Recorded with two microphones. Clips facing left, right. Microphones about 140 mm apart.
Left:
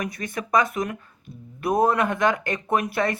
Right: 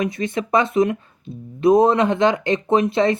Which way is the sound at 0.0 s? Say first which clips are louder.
Right 7 dB; 25° right (ahead or behind).